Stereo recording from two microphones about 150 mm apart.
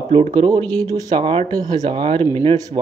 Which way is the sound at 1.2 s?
40° right (ahead or behind).